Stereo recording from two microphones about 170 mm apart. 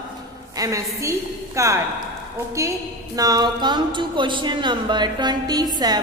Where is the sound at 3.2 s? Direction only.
20° right (ahead or behind).